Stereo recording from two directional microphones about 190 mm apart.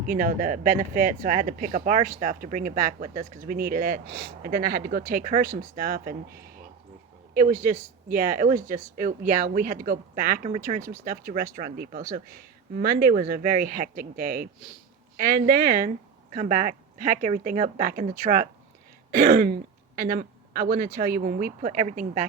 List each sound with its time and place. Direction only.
0.1 s speech: 45° right (ahead or behind)
8.1 s speech: 45° right (ahead or behind)
10.8 s speech: 15° right (ahead or behind)
11.0 s speech: 45° right (ahead or behind)